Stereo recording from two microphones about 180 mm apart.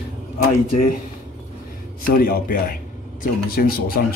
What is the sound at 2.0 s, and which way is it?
Speech, 55° left (ahead or behind).